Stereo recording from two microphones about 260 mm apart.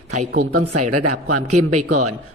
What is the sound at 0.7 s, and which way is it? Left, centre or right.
A man's voice, right.